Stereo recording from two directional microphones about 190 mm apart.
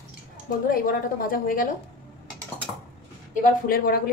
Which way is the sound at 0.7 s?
45° left (ahead or behind).